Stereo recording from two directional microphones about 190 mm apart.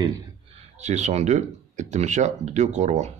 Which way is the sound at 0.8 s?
35° right (ahead or behind).